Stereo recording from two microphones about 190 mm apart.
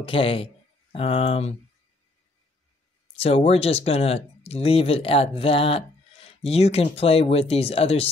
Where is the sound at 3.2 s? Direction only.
30° left (ahead or behind).